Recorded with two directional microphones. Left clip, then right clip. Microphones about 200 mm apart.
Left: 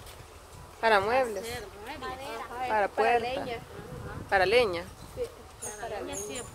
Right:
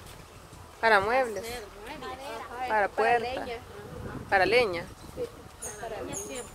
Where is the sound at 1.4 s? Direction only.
35° left (ahead or behind).